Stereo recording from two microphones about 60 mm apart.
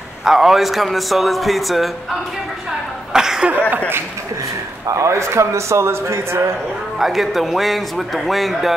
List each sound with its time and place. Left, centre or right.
0.2 s a man's voice: centre
3.1 s a sound: centre
4.8 s a man's voice: right
7.0 s a man's voice: centre